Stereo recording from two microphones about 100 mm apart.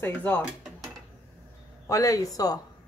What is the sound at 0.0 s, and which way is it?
Speech, 20° left (ahead or behind).